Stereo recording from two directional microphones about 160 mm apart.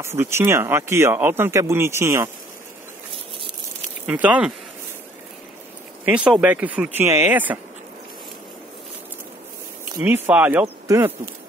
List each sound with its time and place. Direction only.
0.0 s speech: 15° right (ahead or behind)
4.0 s speech: 10° right (ahead or behind)
6.0 s speech: 10° right (ahead or behind)
9.9 s speech: 15° right (ahead or behind)